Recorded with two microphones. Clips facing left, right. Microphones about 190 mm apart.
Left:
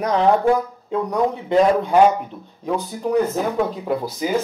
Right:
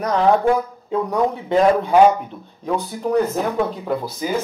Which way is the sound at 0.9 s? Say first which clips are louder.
Right 1 dB; centre (ahead or behind).